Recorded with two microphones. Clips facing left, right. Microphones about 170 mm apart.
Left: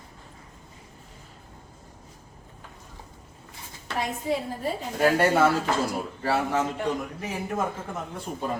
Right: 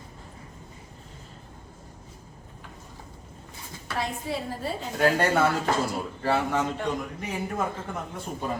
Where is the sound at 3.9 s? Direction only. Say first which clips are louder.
Left 3 dB; 20° left (ahead or behind).